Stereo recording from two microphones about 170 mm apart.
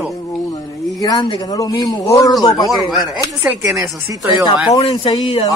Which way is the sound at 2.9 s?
Centre (ahead or behind).